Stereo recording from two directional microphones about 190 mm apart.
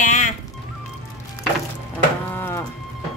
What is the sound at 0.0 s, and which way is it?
Music, 40° left (ahead or behind).